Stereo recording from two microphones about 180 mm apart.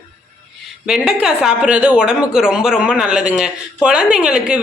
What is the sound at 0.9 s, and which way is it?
Speech, 5° right (ahead or behind).